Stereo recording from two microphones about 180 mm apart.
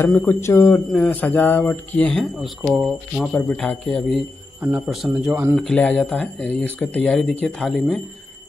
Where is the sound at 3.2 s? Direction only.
5° left (ahead or behind).